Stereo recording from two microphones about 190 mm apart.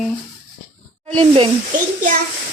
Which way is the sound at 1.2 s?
30° right (ahead or behind).